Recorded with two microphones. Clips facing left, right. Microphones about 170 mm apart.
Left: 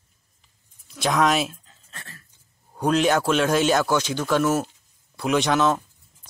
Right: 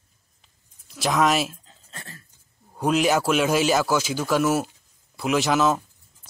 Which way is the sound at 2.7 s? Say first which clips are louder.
Left 1 dB; 5° right (ahead or behind).